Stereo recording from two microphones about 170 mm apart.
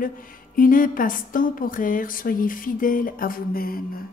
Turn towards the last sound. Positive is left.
turn(degrees=60)  # may be behind; listen again after turning